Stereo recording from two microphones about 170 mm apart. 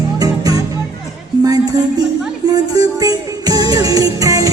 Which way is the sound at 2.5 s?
20° right (ahead or behind).